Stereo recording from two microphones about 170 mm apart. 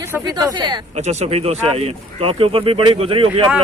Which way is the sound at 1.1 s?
40° right (ahead or behind).